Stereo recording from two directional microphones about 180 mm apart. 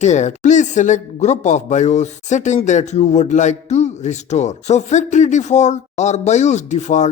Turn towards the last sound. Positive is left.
turn(degrees=40)  # may be behind; listen again after turning